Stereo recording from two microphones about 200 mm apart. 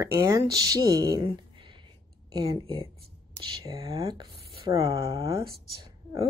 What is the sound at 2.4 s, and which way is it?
Speech, 20° right (ahead or behind).